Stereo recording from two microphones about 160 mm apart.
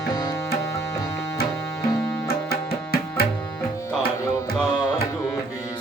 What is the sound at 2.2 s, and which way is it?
Music, 75° left (ahead or behind).